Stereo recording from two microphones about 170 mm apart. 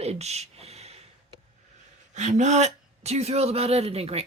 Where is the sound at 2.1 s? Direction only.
45° right (ahead or behind).